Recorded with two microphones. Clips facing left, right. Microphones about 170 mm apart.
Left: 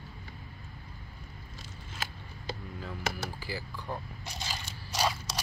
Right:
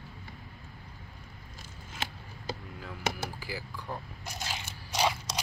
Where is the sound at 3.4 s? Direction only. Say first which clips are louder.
Left 1 dB; 10° right (ahead or behind).